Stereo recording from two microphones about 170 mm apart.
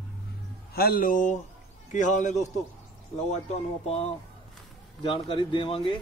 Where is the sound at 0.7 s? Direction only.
60° left (ahead or behind); by 4.1 s 40° left (ahead or behind).